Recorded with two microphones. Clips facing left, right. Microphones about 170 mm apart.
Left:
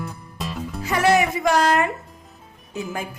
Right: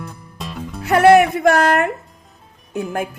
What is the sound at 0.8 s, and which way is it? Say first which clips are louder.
A woman's voice: right 8 dB; 65° right (ahead or behind).